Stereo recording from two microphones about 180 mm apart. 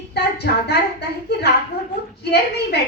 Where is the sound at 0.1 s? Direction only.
65° left (ahead or behind).